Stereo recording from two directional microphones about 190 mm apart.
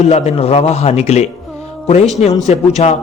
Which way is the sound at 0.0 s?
35° left (ahead or behind).